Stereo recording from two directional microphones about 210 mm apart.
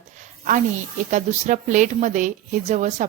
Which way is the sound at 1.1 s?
35° right (ahead or behind).